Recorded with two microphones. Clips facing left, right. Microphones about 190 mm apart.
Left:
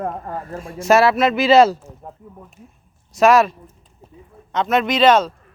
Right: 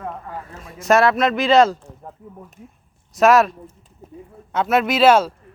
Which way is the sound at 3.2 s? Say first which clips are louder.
Left 1 dB; centre (ahead or behind).